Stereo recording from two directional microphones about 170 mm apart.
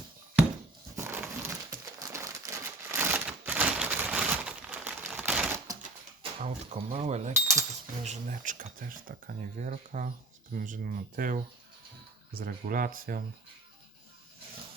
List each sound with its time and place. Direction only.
0.9 s a sound: 15° right (ahead or behind)
1.4 s crumpling: 15° right (ahead or behind)
6.4 s speech: 50° right (ahead or behind)
6.9 s speech: 40° right (ahead or behind)
7.3 s speech: 15° right (ahead or behind)
8.0 s speech: 50° right (ahead or behind)